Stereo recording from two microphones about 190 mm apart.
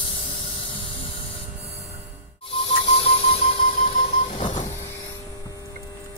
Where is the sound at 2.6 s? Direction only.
30° left (ahead or behind).